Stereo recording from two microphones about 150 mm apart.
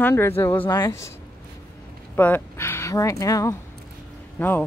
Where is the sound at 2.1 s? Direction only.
10° left (ahead or behind).